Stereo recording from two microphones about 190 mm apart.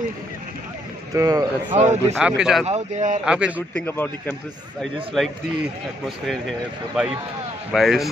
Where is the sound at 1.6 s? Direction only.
40° right (ahead or behind).